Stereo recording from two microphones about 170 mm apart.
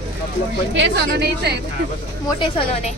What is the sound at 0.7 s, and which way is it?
Speech, 80° right.